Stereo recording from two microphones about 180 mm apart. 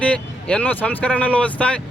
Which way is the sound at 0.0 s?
5° left (ahead or behind).